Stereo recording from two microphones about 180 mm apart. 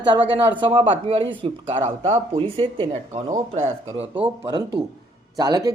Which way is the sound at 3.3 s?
40° right (ahead or behind).